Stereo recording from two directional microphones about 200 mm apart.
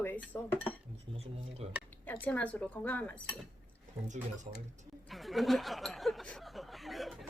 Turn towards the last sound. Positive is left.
turn(degrees=0)  # may be behind; listen again after turning